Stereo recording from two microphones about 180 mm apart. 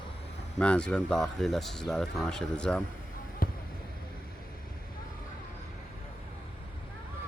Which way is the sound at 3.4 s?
50° left (ahead or behind).